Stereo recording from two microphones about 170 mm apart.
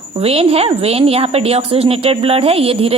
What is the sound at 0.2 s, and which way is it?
A woman's voice, 35° right (ahead or behind).